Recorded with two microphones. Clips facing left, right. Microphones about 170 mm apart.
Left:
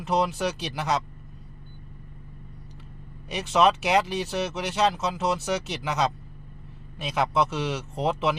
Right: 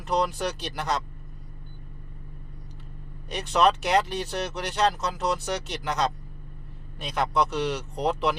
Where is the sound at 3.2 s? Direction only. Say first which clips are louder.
Left 1 dB; 5° left (ahead or behind).